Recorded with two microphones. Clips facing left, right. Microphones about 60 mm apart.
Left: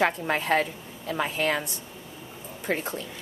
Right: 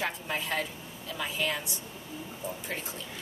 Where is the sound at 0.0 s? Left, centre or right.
Left.